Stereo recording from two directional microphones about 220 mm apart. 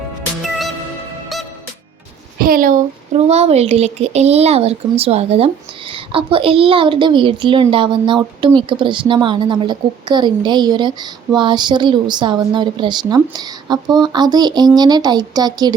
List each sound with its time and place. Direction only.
2.4 s a woman's voice: 40° right (ahead or behind); by 15.7 s 20° right (ahead or behind)